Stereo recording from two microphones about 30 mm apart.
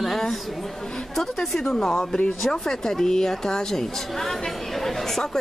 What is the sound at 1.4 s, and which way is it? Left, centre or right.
A woman's voice, centre.